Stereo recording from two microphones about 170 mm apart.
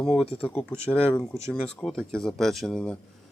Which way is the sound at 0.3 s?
30° left (ahead or behind).